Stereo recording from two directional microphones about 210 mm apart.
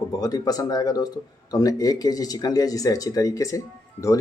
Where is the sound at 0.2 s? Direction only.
20° left (ahead or behind).